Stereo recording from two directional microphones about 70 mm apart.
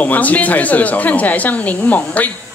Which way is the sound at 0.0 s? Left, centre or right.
Left.